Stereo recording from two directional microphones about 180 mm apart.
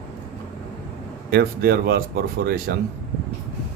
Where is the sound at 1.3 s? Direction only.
60° right (ahead or behind).